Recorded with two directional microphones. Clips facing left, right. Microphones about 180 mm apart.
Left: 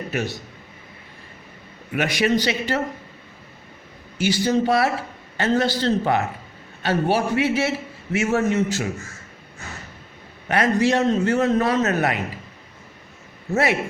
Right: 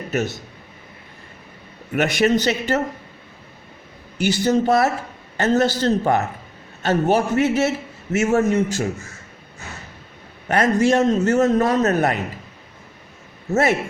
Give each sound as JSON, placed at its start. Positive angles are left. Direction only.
{"t": 1.9, "sound": "a man's voice", "side_deg": -50}
{"t": 4.2, "sound": "a man's voice", "side_deg": -45}
{"t": 10.5, "sound": "a man's voice", "side_deg": -45}
{"t": 13.5, "sound": "a man's voice", "side_deg": -45}